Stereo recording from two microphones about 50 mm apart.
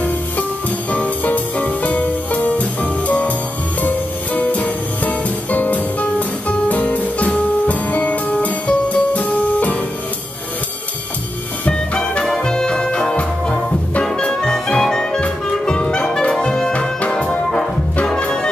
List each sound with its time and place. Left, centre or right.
0.9 s music: left
11.6 s music: left
12.3 s music: centre
16.7 s music: left